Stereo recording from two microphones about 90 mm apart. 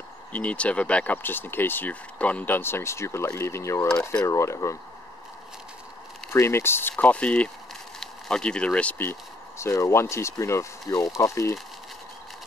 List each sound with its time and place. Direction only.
0.3 s speech: 15° left (ahead or behind); by 4.7 s 35° left (ahead or behind)
6.3 s speech: 25° left (ahead or behind)
9.6 s speech: 35° left (ahead or behind)